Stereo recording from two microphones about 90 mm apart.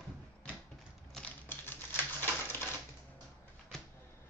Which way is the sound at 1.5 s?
25° left (ahead or behind).